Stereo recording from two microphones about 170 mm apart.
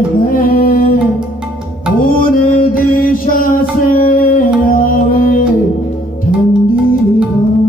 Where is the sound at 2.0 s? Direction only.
55° left (ahead or behind).